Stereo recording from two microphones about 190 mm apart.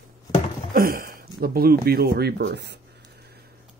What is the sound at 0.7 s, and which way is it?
Speech, 50° right (ahead or behind).